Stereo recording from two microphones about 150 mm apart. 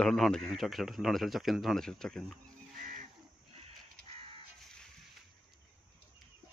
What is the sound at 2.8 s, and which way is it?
Livestock, 60° right (ahead or behind).